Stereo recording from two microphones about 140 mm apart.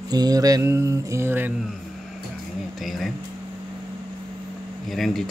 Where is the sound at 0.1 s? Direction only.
25° right (ahead or behind).